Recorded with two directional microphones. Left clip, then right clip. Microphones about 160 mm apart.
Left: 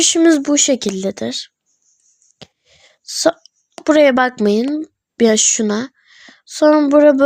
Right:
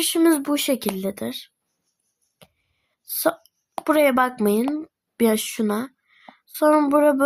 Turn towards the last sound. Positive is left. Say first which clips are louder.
# left 7 dB
turn(degrees=25)  # may be behind; listen again after turning